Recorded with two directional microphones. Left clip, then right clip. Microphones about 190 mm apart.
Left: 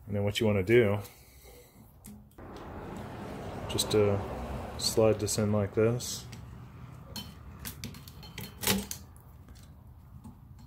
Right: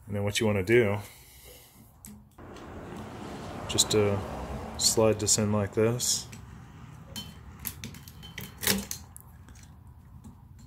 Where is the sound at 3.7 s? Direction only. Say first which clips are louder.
Right 2 dB; centre (ahead or behind).